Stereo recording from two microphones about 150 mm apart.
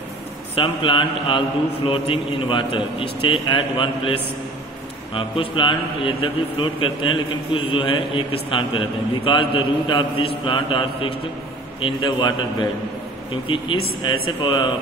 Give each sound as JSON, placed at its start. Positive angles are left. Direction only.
{"t": 0.6, "sound": "a man's voice", "side_deg": 35}
{"t": 5.1, "sound": "a man's voice", "side_deg": 35}
{"t": 14.0, "sound": "a man's voice", "side_deg": 30}